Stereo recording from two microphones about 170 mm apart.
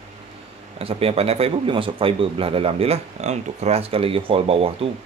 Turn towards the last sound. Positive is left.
turn(degrees=-35)  # may be behind; listen again after turning